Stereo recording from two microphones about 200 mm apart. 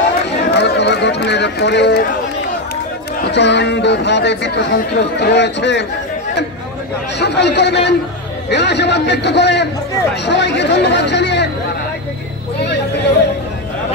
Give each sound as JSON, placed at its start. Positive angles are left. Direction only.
{"t": 0.5, "sound": "a sound", "side_deg": 60}
{"t": 3.3, "sound": "speech", "side_deg": 60}
{"t": 7.2, "sound": "speech", "side_deg": 60}